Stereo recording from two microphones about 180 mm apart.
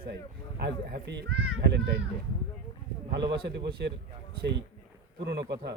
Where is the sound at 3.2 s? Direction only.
25° right (ahead or behind).